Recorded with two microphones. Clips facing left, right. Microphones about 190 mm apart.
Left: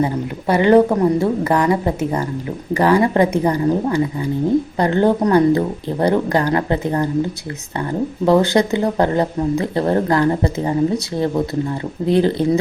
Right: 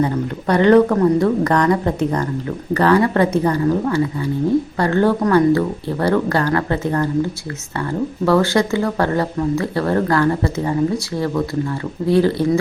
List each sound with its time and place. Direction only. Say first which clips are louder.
0.0 s speech: even; 10° left (ahead or behind)